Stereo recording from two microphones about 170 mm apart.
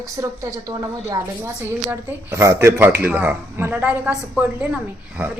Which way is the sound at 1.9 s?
15° right (ahead or behind).